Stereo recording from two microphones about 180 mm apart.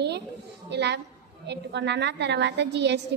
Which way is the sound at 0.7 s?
70° right (ahead or behind).